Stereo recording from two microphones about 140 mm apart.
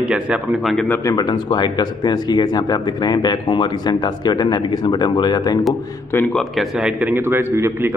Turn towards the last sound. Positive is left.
turn(degrees=-20)  # may be behind; listen again after turning